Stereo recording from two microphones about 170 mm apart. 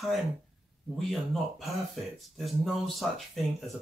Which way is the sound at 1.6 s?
Centre (ahead or behind).